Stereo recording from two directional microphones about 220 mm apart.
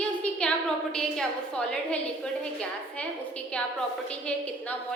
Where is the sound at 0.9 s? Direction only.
5° left (ahead or behind).